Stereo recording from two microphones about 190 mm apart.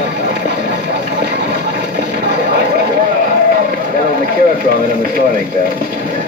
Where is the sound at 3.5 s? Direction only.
50° right (ahead or behind).